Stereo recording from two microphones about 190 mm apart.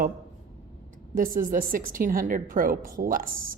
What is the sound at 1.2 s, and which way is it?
A woman's voice, 45° right (ahead or behind).